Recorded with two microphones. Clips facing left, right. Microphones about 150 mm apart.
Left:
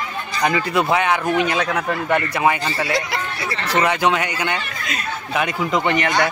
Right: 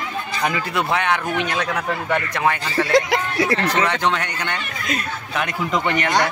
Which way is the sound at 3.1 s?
90° right.